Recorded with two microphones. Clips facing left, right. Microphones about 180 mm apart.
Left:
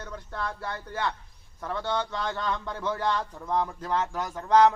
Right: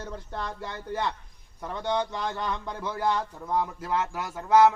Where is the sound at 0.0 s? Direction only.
25° right (ahead or behind).